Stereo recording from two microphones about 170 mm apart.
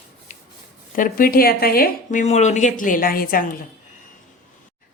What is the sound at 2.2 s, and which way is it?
Speech, 40° left (ahead or behind).